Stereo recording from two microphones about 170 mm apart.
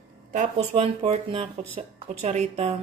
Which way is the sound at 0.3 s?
50° right (ahead or behind).